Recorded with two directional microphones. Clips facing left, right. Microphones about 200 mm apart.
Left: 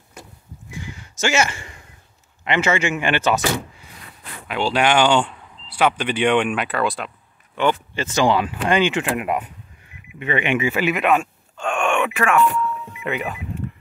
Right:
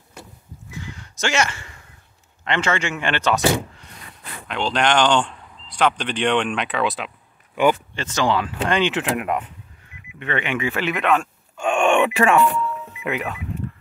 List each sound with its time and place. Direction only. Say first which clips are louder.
0.7 s a sound: left 1 dB; 10° left (ahead or behind)
2.4 s speech: left 3 dB; 10° left (ahead or behind)
11.5 s groan: right 3 dB; 15° right (ahead or behind)
11.8 s speech: right 4 dB; 30° right (ahead or behind)
13.0 s speech: even; centre (ahead or behind)